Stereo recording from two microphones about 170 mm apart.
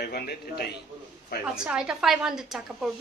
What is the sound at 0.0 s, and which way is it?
Speech, 65° left (ahead or behind).